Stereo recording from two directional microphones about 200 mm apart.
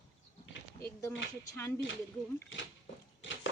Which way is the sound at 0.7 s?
15° left (ahead or behind).